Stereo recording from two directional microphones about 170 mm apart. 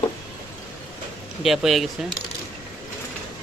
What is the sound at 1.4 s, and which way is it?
Speech, centre (ahead or behind).